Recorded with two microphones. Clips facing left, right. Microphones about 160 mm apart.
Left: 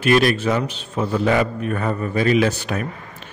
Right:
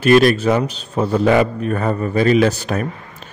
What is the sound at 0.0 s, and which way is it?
A man's voice, 40° right (ahead or behind).